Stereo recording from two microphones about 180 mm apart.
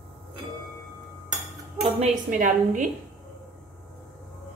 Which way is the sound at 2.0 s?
45° right (ahead or behind).